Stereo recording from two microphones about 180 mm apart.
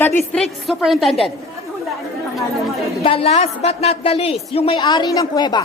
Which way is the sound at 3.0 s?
30° left (ahead or behind).